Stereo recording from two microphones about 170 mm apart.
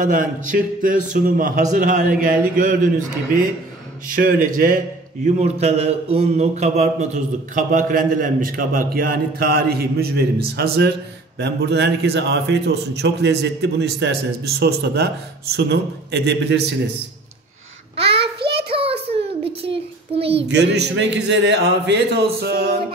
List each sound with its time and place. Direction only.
0.0 s a man's voice: 55° right (ahead or behind)
4.1 s a man's voice: 55° right (ahead or behind); by 16.9 s 85° right
17.9 s child singing: 80° right
18.7 s a sound: 35° right (ahead or behind)
19.1 s child singing: 35° right (ahead or behind)
20.4 s a man's voice: 90° right; by 22.8 s 65° right (ahead or behind)